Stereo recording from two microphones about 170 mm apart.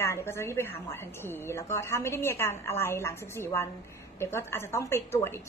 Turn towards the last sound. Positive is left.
turn(degrees=15)  # may be behind; listen again after turning